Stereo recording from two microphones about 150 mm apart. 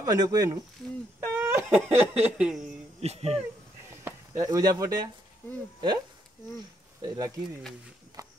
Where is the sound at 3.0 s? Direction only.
45° right (ahead or behind).